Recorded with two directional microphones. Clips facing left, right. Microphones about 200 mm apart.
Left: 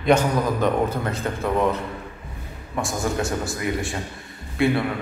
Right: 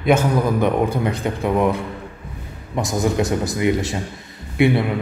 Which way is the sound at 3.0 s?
20° right (ahead or behind).